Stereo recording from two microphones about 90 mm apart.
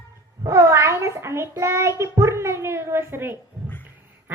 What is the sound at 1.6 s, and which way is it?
A child's voice, 30° right (ahead or behind).